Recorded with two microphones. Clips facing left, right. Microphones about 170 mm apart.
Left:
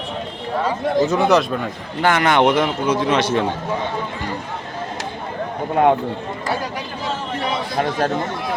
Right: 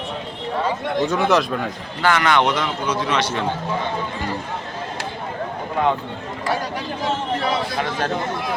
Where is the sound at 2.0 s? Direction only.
50° left (ahead or behind).